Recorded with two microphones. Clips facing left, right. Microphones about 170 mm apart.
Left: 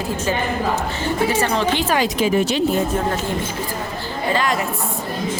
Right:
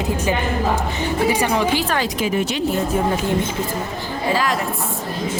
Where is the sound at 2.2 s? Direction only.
35° left (ahead or behind).